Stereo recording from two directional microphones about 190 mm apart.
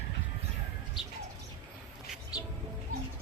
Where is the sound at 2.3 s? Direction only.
20° left (ahead or behind).